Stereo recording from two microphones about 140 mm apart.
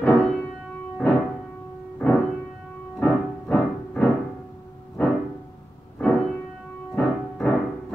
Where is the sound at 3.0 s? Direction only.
10° left (ahead or behind).